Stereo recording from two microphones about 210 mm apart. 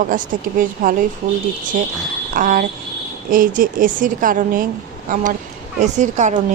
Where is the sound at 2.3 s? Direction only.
40° right (ahead or behind).